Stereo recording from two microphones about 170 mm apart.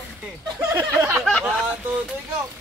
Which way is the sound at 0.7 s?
20° right (ahead or behind).